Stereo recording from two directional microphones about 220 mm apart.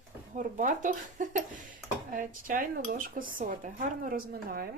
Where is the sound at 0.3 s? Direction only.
35° right (ahead or behind).